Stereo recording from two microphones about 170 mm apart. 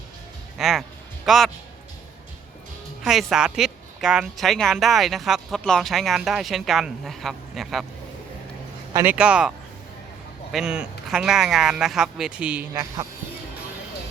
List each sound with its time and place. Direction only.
0.6 s a sound: centre (ahead or behind)
3.0 s speech: centre (ahead or behind)
8.9 s speech: 20° right (ahead or behind)
9.1 s speech: 5° right (ahead or behind)
10.5 s speech: 5° right (ahead or behind)
12.7 s speech: 20° right (ahead or behind)